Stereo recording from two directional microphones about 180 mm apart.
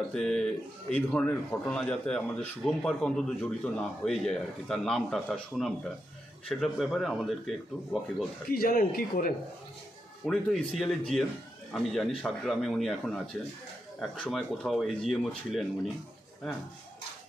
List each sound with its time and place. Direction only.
0.1 s a man's voice: 5° left (ahead or behind)
8.5 s speech: 55° left (ahead or behind)
10.2 s a man's voice: 5° left (ahead or behind)